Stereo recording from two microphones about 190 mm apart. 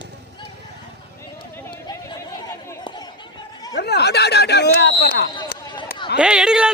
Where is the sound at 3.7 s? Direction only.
60° left (ahead or behind).